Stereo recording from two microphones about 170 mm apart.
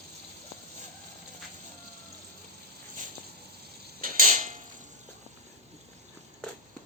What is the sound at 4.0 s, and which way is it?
Creak, 55° right (ahead or behind).